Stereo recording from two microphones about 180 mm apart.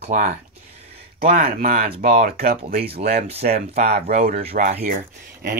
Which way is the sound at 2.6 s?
35° right (ahead or behind).